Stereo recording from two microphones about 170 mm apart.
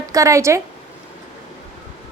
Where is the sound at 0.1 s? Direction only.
20° right (ahead or behind).